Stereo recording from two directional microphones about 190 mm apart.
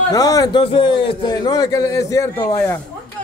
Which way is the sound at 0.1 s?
20° left (ahead or behind).